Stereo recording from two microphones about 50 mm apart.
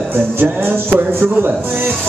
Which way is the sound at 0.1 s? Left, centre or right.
Right.